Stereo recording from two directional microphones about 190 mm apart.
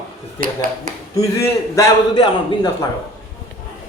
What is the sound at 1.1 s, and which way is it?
A man's voice, 15° left (ahead or behind).